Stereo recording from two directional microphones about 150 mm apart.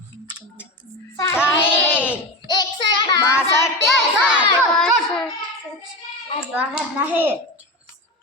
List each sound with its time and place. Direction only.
1.1 s child singing: 15° left (ahead or behind)
2.5 s child singing: 30° left (ahead or behind)
3.3 s child singing: 20° left (ahead or behind)
3.8 s child singing: centre (ahead or behind)
6.5 s a child's voice: 10° right (ahead or behind)